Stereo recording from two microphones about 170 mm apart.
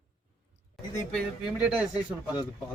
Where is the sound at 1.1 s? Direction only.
5° right (ahead or behind).